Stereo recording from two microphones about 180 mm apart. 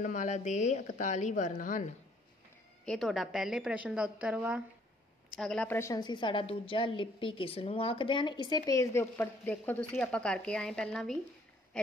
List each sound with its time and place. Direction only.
0.0 s a woman's voice: 45° left (ahead or behind)
2.8 s a woman's voice: centre (ahead or behind)
11.7 s owl: 5° left (ahead or behind)